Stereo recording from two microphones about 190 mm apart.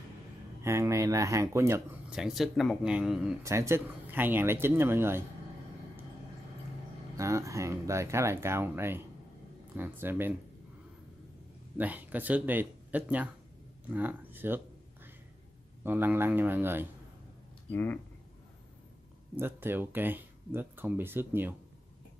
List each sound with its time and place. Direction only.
0.6 s speech: 15° right (ahead or behind)
2.1 s speech: centre (ahead or behind)
3.4 s speech: 15° right (ahead or behind)
7.2 s speech: 15° right (ahead or behind)
11.8 s speech: 10° right (ahead or behind)
15.8 s speech: 10° right (ahead or behind)
17.6 s speech: 10° left (ahead or behind)
19.3 s speech: 10° right (ahead or behind)